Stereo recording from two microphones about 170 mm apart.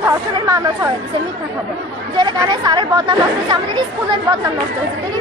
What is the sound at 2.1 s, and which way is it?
A woman's voice, 25° right (ahead or behind).